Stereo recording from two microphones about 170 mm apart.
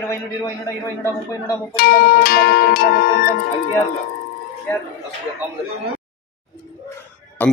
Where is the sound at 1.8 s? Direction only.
60° left (ahead or behind).